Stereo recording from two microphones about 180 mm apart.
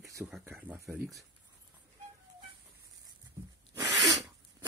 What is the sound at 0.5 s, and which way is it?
Speech, 10° right (ahead or behind).